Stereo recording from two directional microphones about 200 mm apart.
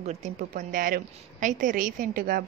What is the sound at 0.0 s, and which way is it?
A woman's voice, 35° right (ahead or behind).